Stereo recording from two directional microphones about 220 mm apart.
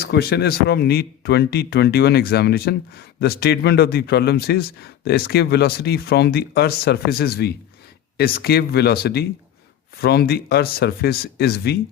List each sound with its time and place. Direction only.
0.0 s speech: 45° left (ahead or behind)